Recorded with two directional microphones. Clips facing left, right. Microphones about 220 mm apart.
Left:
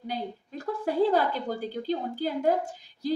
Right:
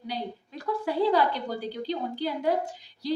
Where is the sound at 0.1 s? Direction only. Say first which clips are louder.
Left 1 dB; 45° left (ahead or behind).